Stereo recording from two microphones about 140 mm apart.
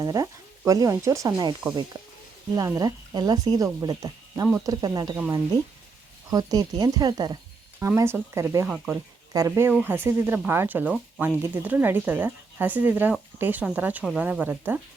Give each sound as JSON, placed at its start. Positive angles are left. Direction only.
{"t": 0.0, "sound": "speech", "side_deg": -25}
{"t": 2.6, "sound": "speech", "side_deg": -25}
{"t": 6.3, "sound": "speech", "side_deg": -25}
{"t": 9.3, "sound": "speech", "side_deg": -20}
{"t": 14.0, "sound": "speech", "side_deg": 0}
{"t": 14.3, "sound": "speech", "side_deg": -10}